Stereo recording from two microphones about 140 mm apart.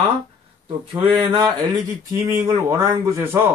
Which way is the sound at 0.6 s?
35° right (ahead or behind).